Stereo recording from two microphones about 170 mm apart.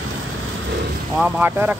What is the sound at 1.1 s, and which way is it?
Speech, 10° right (ahead or behind).